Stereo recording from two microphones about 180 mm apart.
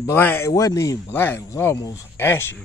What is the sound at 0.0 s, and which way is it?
Speech, 10° left (ahead or behind).